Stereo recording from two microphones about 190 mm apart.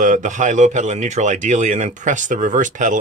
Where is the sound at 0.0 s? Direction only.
40° right (ahead or behind).